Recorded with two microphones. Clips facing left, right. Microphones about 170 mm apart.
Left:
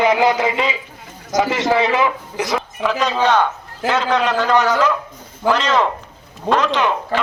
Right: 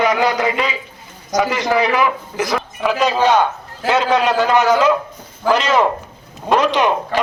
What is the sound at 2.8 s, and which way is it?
A man's voice, 10° right (ahead or behind).